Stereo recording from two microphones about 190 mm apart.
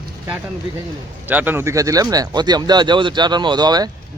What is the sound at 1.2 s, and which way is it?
Speech, 10° right (ahead or behind).